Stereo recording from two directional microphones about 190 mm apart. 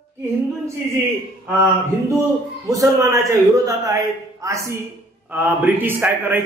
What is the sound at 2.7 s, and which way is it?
A man's voice, 15° right (ahead or behind).